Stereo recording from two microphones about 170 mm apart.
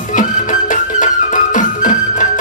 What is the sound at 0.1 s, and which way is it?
Music, 50° left (ahead or behind).